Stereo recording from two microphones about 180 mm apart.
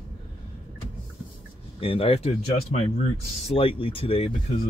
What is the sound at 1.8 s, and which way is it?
Speech, 30° left (ahead or behind).